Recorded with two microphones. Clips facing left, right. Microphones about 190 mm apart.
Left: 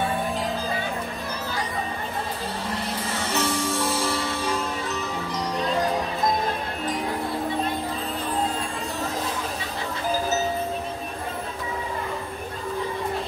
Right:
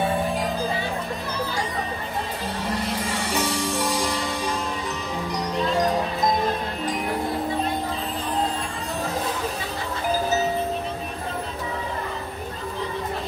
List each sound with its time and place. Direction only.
3.3 s music: 15° right (ahead or behind)